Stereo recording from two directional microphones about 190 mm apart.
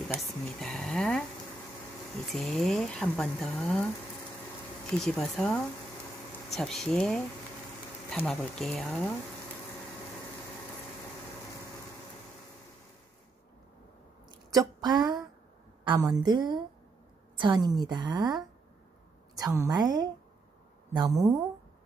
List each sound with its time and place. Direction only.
0.2 s speech: centre (ahead or behind)
2.3 s speech: centre (ahead or behind)
14.3 s a sound: 20° right (ahead or behind)
15.8 s a woman's voice: 25° right (ahead or behind)
19.4 s a woman's voice: 15° right (ahead or behind)